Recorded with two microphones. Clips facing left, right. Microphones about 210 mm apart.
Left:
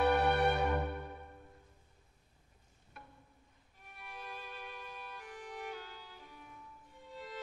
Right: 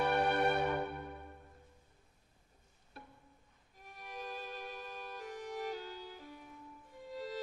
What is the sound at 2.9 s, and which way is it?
Music, 35° right (ahead or behind).